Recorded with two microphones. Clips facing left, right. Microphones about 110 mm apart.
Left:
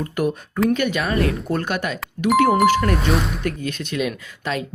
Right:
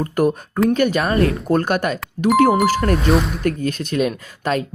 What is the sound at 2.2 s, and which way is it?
Speech, 35° right (ahead or behind).